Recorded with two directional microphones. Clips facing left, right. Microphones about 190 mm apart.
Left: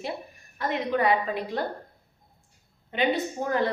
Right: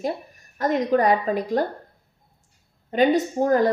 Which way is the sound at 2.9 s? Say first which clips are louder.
Right 7 dB; 40° right (ahead or behind).